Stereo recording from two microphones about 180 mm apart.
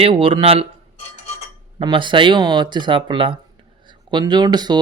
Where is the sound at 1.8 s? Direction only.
25° right (ahead or behind).